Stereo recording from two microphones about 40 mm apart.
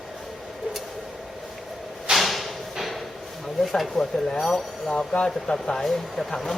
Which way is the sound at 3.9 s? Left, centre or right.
Centre.